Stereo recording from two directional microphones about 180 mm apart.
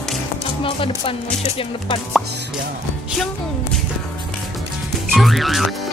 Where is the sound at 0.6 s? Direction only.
30° left (ahead or behind).